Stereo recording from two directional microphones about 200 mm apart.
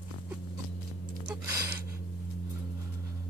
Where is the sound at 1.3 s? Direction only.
10° right (ahead or behind).